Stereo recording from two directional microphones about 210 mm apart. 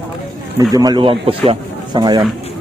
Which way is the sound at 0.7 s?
20° right (ahead or behind).